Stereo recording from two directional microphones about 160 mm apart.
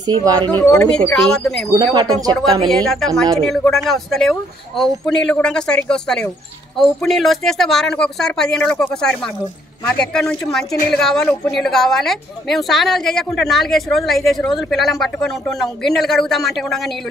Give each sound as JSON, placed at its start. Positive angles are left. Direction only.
{"t": 0.0, "sound": "speech", "side_deg": -25}
{"t": 0.4, "sound": "speech", "side_deg": 10}
{"t": 1.7, "sound": "speech", "side_deg": -25}
{"t": 2.7, "sound": "speech", "side_deg": 5}